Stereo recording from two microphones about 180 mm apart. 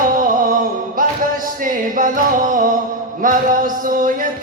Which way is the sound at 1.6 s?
45° right (ahead or behind).